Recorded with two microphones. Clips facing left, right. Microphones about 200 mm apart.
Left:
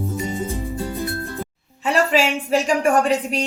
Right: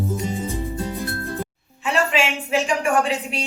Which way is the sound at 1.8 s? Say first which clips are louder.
Left 3 dB; 40° left (ahead or behind).